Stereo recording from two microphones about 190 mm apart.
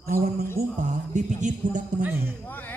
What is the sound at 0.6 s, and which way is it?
Speech, 50° right (ahead or behind).